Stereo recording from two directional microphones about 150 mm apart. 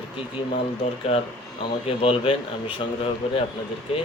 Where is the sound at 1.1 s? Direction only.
40° left (ahead or behind).